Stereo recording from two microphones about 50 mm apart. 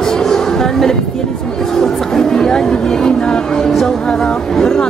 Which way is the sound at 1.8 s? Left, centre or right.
Centre.